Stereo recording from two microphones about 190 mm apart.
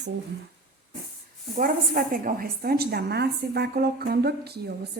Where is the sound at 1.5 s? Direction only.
50° right (ahead or behind).